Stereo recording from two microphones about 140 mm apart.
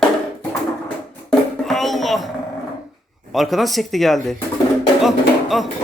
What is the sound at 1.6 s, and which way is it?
Music, centre (ahead or behind).